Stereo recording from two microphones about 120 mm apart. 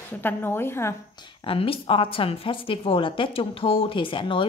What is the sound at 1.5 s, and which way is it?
A woman's voice, 50° left (ahead or behind).